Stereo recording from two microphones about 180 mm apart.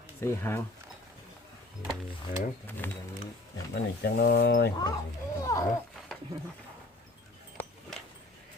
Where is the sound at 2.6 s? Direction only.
10° left (ahead or behind).